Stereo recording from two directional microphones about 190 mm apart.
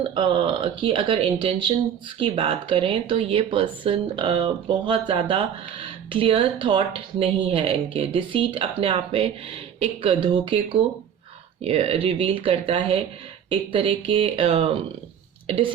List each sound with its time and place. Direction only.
0.0 s speech: 25° right (ahead or behind)